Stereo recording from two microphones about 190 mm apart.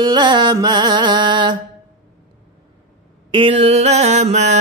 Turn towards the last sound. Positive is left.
turn(degrees=-35)  # may be behind; listen again after turning